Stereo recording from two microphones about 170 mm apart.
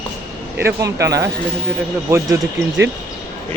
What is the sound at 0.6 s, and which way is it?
Speech, 20° right (ahead or behind).